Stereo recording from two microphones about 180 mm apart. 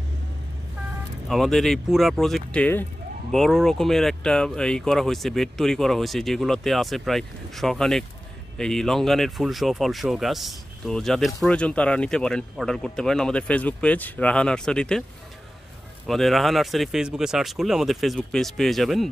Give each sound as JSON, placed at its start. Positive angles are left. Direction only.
{"t": 1.3, "sound": "speech", "side_deg": 0}
{"t": 16.1, "sound": "speech", "side_deg": 0}